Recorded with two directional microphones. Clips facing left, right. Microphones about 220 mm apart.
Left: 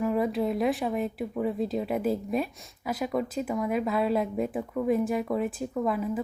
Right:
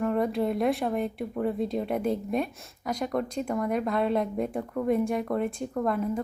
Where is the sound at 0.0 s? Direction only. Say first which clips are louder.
Even; 5° left (ahead or behind).